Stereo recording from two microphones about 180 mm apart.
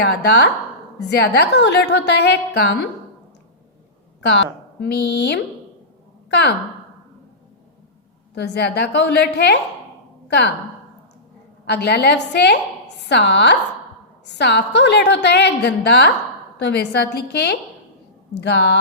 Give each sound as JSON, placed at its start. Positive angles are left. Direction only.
{"t": 0.0, "sound": "a woman's voice", "side_deg": 70}
{"t": 4.3, "sound": "a woman's voice", "side_deg": 70}
{"t": 8.4, "sound": "a woman's voice", "side_deg": 70}
{"t": 11.6, "sound": "a woman's voice", "side_deg": 65}